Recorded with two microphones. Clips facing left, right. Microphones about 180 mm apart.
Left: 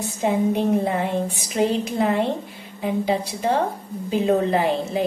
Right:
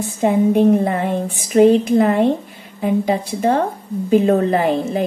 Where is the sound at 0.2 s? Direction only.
50° right (ahead or behind).